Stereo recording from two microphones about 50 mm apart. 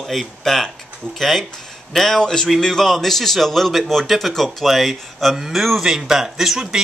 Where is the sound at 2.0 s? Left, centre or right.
Centre.